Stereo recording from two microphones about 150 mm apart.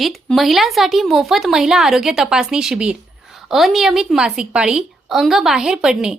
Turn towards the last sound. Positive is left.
turn(degrees=-5)  # may be behind; listen again after turning